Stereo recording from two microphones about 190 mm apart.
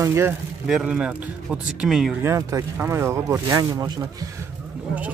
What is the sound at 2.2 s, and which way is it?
Speech, 15° right (ahead or behind).